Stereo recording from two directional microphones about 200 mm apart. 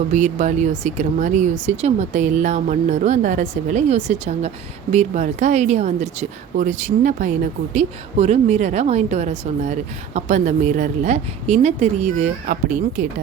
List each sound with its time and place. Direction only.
0.1 s speech: 35° right (ahead or behind)